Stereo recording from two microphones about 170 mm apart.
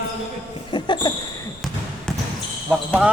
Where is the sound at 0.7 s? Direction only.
25° left (ahead or behind).